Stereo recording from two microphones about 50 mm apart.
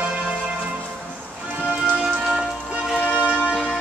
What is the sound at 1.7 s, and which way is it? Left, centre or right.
Music, right.